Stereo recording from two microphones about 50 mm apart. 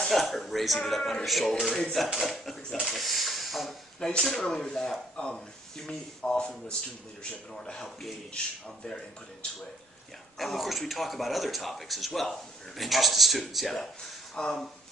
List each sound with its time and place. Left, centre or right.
0.0 s a man's voice: centre
4.0 s a man's voice: centre
10.3 s a man's voice: centre
14.3 s speech: centre